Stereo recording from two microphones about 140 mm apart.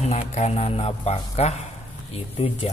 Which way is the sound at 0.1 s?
50° left (ahead or behind).